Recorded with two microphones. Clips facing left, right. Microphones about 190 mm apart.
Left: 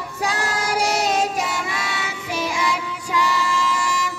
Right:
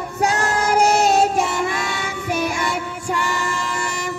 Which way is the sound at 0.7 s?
50° right (ahead or behind).